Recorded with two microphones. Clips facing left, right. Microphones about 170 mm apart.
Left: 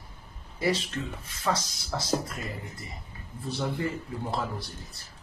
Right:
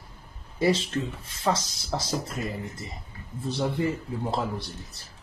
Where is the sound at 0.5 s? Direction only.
25° right (ahead or behind).